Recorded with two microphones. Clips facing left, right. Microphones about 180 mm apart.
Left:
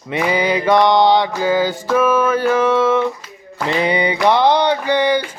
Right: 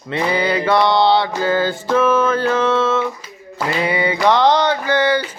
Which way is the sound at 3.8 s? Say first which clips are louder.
Left 1 dB; 20° left (ahead or behind).